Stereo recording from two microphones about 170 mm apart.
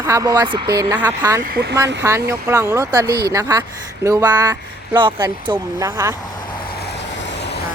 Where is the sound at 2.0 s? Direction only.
15° right (ahead or behind).